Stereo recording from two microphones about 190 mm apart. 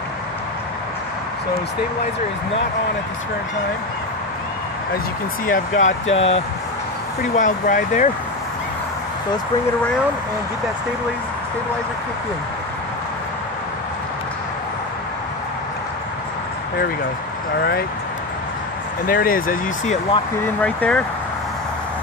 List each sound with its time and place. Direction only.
5.5 s speech: 40° left (ahead or behind)
6.0 s speech: 80° left
7.3 s speech: 45° left (ahead or behind)
19.0 s speech: 50° left (ahead or behind)
20.6 s speech: 5° left (ahead or behind)